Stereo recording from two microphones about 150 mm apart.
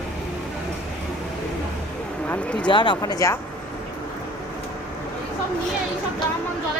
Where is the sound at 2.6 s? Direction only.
30° left (ahead or behind).